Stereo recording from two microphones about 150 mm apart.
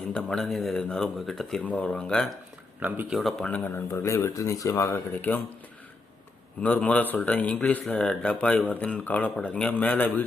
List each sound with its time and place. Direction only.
0.1 s speech: 5° left (ahead or behind)
2.8 s speech: 10° right (ahead or behind)
3.2 s speech: 5° left (ahead or behind)
6.6 s speech: 10° left (ahead or behind)